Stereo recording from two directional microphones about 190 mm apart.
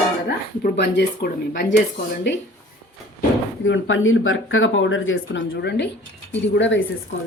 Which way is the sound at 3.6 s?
90° left.